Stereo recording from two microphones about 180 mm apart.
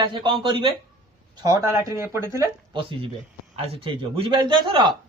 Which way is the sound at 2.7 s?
30° right (ahead or behind).